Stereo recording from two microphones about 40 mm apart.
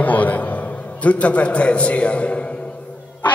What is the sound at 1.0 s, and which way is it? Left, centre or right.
A man's voice, left.